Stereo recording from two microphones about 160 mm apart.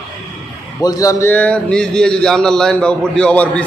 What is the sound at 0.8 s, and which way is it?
A man's voice, 25° left (ahead or behind).